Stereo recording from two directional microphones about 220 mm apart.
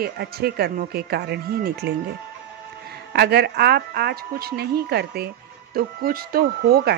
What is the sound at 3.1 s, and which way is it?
A man's voice, 50° right (ahead or behind).